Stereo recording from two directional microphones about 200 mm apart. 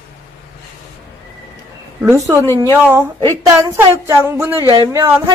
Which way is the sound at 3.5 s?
15° right (ahead or behind).